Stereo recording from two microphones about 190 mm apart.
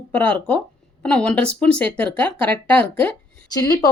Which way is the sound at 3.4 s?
20° left (ahead or behind).